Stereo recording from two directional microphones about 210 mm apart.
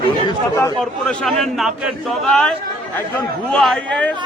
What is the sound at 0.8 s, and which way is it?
A man's voice, centre (ahead or behind).